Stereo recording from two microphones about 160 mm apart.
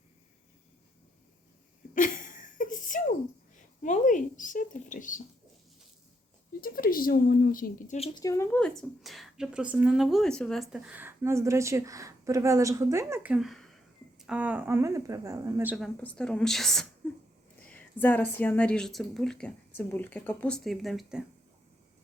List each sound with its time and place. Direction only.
1.9 s a sound: 55° left (ahead or behind)
3.5 s speech: 50° left (ahead or behind)
6.6 s speech: 65° left (ahead or behind)
7.9 s speech: 40° left (ahead or behind)
8.2 s speech: 20° left (ahead or behind)
8.5 s a woman's voice: 5° left (ahead or behind); by 15.7 s 15° right (ahead or behind)
16.0 s a woman's voice: 5° left (ahead or behind)